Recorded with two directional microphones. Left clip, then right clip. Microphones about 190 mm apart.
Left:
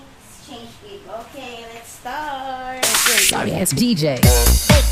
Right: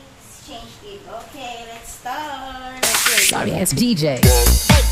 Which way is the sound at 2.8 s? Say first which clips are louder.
Even; centre (ahead or behind).